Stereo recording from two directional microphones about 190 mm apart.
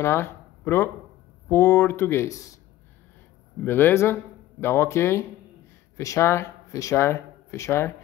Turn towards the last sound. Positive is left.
turn(degrees=15)  # may be behind; listen again after turning